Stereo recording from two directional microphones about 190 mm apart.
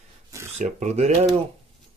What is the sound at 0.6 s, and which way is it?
Speech, 35° right (ahead or behind).